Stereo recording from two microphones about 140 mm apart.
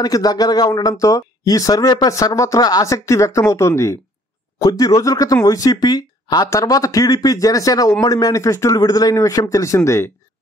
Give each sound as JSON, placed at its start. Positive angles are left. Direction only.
{"t": 0.0, "sound": "speech", "side_deg": 25}